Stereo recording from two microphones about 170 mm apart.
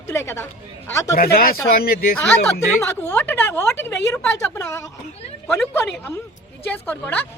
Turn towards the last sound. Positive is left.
turn(degrees=10)  # may be behind; listen again after turning